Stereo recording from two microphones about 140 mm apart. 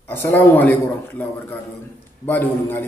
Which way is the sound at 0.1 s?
15° left (ahead or behind).